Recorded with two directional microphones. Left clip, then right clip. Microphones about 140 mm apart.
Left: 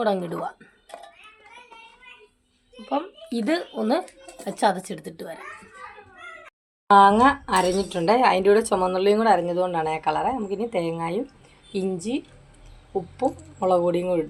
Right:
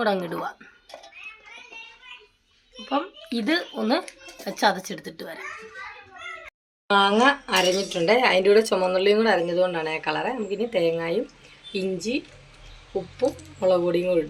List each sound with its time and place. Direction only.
0.0 s speech: 20° left (ahead or behind)
2.8 s a sound: 10° left (ahead or behind)
3.3 s speech: 20° left (ahead or behind)
6.9 s speech: 60° left (ahead or behind)
13.6 s speech: 55° left (ahead or behind)